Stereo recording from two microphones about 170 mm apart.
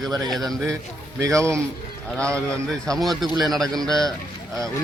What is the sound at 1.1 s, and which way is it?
Speech, 20° right (ahead or behind).